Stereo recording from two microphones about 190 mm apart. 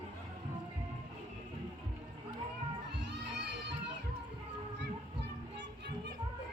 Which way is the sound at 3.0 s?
65° right (ahead or behind).